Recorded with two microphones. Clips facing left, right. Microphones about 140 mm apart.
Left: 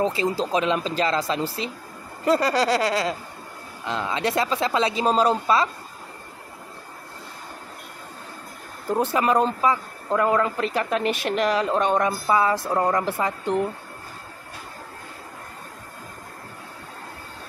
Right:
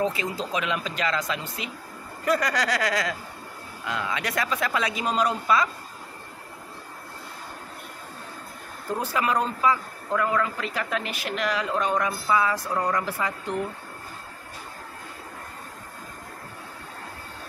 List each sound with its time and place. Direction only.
0.0 s speech: 30° left (ahead or behind)
9.0 s speech: 25° left (ahead or behind)